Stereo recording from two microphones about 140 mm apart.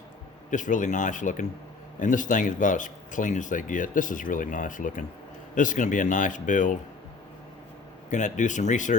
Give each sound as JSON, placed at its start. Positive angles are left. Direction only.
{"t": 0.5, "sound": "speech", "side_deg": 65}
{"t": 8.1, "sound": "speech", "side_deg": 60}